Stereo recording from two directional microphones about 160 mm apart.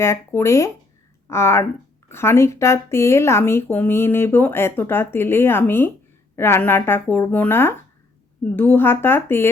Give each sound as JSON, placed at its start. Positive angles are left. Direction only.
{"t": 0.0, "sound": "speech", "side_deg": 15}